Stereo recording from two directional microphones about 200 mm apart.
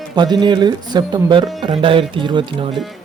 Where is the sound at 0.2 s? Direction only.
20° right (ahead or behind).